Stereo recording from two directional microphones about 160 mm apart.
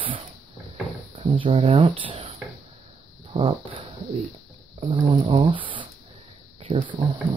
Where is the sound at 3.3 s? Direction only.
35° right (ahead or behind).